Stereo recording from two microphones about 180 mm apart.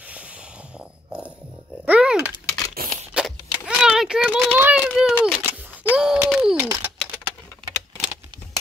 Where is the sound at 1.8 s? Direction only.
5° right (ahead or behind).